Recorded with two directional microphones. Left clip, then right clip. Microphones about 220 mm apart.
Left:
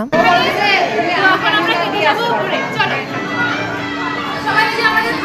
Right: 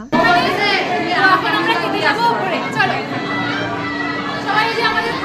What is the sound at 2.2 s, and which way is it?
Speech, 20° right (ahead or behind).